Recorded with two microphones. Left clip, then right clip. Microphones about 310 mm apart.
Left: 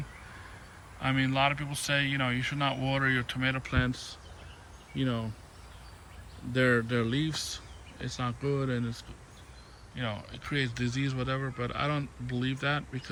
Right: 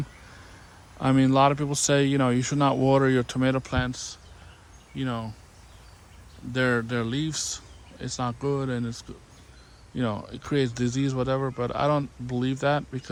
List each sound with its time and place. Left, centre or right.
1.0 s speech: centre
6.5 s speech: centre